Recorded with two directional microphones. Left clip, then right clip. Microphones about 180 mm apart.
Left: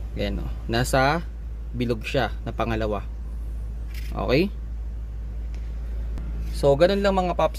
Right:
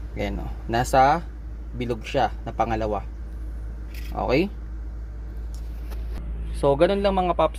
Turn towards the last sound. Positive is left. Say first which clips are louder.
# right 1 dB
turn(degrees=10)  # may be behind; listen again after turning